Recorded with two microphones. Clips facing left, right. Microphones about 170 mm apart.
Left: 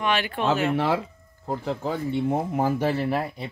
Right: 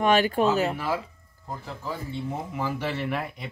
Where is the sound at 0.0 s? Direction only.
40° right (ahead or behind).